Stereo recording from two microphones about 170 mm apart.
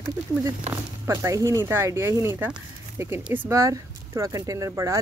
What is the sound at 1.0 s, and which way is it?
Speech, 15° right (ahead or behind).